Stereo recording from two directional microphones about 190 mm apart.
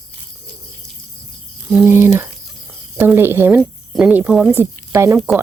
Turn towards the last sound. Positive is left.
turn(degrees=-5)  # may be behind; listen again after turning